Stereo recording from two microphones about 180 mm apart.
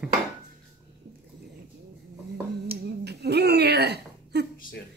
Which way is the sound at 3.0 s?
65° right (ahead or behind).